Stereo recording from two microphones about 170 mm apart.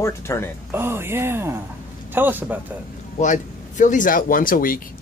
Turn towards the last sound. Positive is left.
turn(degrees=55)  # may be behind; listen again after turning